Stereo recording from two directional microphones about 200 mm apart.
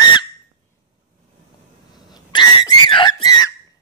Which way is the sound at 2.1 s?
20° left (ahead or behind).